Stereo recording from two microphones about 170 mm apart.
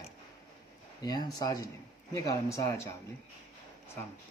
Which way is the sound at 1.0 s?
25° left (ahead or behind).